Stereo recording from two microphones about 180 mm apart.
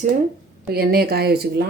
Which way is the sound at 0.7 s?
60° right (ahead or behind).